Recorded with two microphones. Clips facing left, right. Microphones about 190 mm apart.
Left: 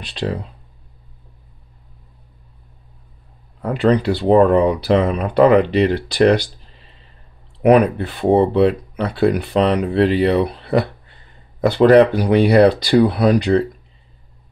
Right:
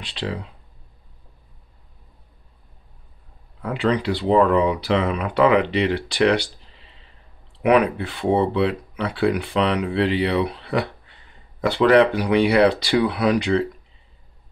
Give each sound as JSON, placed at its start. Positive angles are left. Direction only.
{"t": 0.0, "sound": "speech", "side_deg": 40}
{"t": 3.6, "sound": "speech", "side_deg": 40}
{"t": 7.6, "sound": "speech", "side_deg": 40}